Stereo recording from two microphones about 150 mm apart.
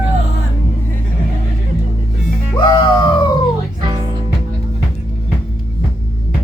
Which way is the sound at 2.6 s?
30° left (ahead or behind).